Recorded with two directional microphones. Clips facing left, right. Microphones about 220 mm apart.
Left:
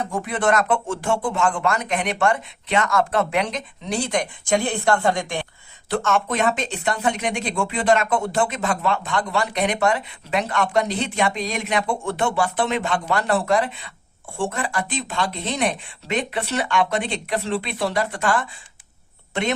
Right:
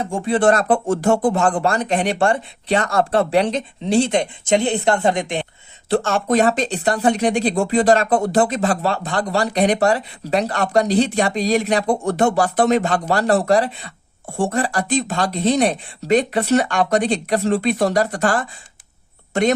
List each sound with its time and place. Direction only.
0.0 s speech: 25° right (ahead or behind)
5.9 s speech: 35° right (ahead or behind)